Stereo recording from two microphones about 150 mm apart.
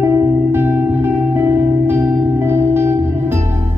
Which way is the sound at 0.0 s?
15° right (ahead or behind).